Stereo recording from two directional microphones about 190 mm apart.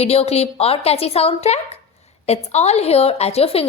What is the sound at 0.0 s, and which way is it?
A woman's voice, 35° left (ahead or behind).